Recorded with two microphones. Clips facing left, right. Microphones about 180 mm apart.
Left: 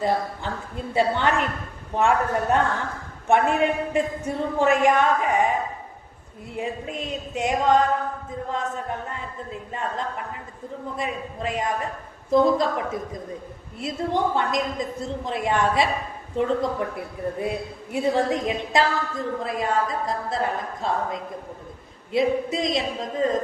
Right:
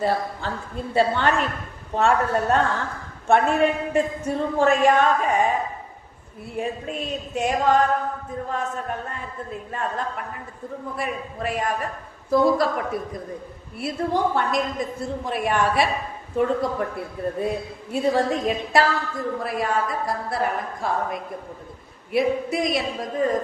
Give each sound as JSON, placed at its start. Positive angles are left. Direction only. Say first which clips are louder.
{"t": 0.0, "sound": "a woman's voice", "louder": "even", "side_deg": 15}
{"t": 6.5, "sound": "a woman's voice", "louder": "right 2 dB", "side_deg": 20}
{"t": 10.9, "sound": "a woman's voice", "louder": "even", "side_deg": 20}